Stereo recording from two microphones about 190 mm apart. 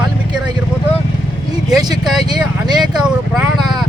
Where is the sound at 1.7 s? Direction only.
Centre (ahead or behind).